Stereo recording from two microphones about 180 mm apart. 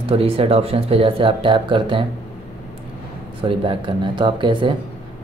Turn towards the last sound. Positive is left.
turn(degrees=-25)  # may be behind; listen again after turning